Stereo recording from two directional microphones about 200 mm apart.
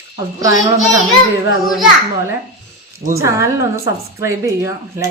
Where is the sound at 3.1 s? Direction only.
15° right (ahead or behind).